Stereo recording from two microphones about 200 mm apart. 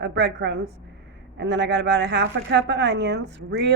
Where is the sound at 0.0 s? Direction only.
60° right (ahead or behind).